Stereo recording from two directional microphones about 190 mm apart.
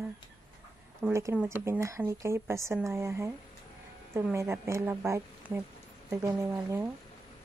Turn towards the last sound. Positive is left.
turn(degrees=-15)  # may be behind; listen again after turning